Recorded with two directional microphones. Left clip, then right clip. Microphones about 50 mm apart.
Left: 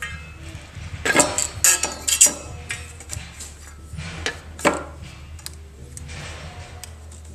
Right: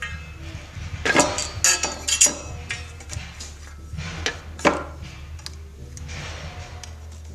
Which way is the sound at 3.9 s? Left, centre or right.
Centre.